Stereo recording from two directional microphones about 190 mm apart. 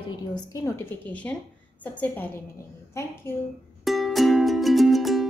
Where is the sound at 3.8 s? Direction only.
Centre (ahead or behind).